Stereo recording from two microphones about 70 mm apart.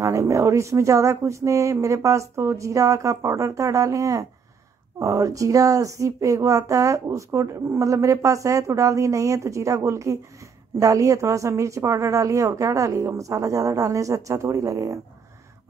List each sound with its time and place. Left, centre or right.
0.0 s speech: right